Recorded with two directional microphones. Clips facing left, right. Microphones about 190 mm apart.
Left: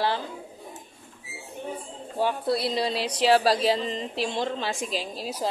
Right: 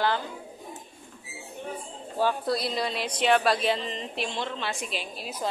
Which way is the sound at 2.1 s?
25° left (ahead or behind).